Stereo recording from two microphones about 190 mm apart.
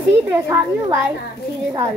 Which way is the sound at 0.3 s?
15° right (ahead or behind).